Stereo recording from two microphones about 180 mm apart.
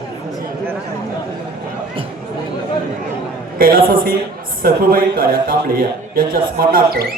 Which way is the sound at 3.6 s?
55° right (ahead or behind).